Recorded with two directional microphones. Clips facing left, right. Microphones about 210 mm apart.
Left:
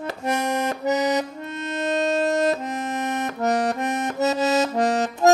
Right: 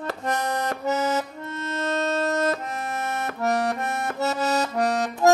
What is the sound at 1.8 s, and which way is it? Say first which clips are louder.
Music: left 3 dB; 15° left (ahead or behind).